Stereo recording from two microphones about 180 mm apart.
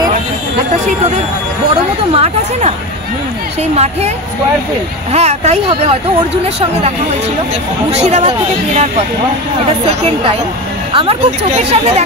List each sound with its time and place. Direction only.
2.1 s speech: 35° right (ahead or behind)
3.7 s speech: 35° right (ahead or behind)
5.1 s speech: 35° right (ahead or behind)
7.9 s speech: 35° right (ahead or behind)
10.9 s speech: 30° right (ahead or behind)